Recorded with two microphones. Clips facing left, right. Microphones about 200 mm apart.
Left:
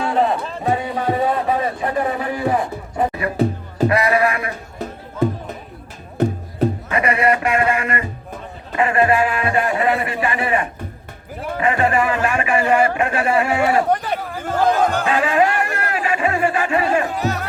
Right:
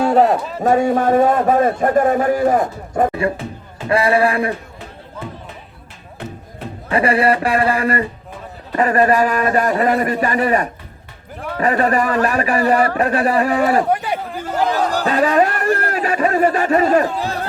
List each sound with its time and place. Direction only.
0.1 s a sound: 45° right (ahead or behind)
0.6 s a man's voice: 45° right (ahead or behind)
3.4 s speech: 35° left (ahead or behind)
3.8 s a man's voice: 30° right (ahead or behind)
5.2 s speech: 40° left (ahead or behind)
6.2 s music: 40° left (ahead or behind)
6.8 s a man's voice: 30° right (ahead or behind)
13.9 s speech: 10° right (ahead or behind)
14.8 s speech: 35° right (ahead or behind)